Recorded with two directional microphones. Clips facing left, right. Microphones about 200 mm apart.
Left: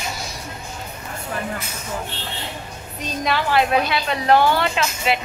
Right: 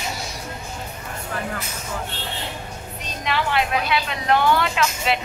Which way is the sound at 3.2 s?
40° left (ahead or behind).